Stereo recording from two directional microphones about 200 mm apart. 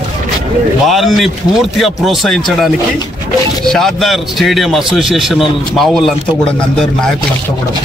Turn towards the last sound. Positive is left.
turn(degrees=0)  # may be behind; listen again after turning